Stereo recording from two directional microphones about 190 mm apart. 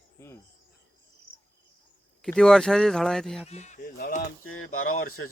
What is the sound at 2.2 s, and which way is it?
Speech, 5° left (ahead or behind).